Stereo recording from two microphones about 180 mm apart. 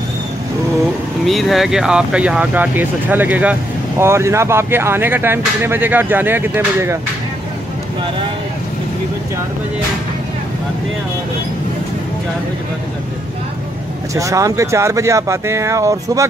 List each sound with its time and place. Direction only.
1.2 s speech: centre (ahead or behind)
14.1 s speech: 20° right (ahead or behind)